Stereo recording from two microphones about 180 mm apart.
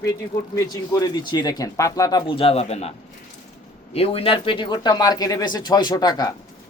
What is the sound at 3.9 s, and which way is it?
A man's voice, 30° left (ahead or behind).